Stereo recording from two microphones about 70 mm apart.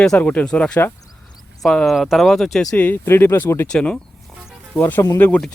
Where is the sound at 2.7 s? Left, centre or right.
Left.